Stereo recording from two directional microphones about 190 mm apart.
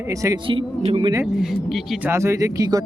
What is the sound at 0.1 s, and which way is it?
Speech, 15° right (ahead or behind).